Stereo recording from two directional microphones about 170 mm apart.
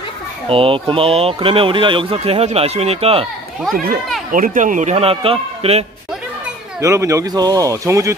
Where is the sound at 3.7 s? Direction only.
55° right (ahead or behind); by 5.9 s 35° right (ahead or behind).